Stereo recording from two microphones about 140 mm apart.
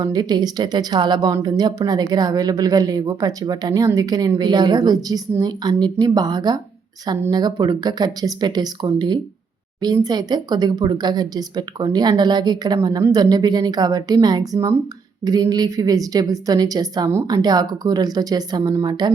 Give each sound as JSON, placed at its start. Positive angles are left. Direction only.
{"t": 0.0, "sound": "a woman's voice", "side_deg": -30}